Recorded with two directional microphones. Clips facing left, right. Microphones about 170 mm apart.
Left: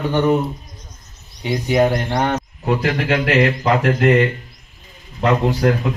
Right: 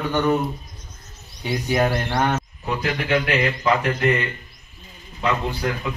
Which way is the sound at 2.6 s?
75° left (ahead or behind).